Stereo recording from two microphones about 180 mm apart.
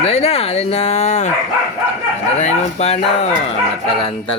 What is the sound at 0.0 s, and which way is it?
Speech, 35° left (ahead or behind).